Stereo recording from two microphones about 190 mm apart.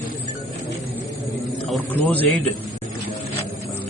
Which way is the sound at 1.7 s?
10° left (ahead or behind).